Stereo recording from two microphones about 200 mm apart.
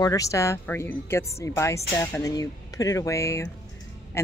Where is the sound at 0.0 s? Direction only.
15° left (ahead or behind).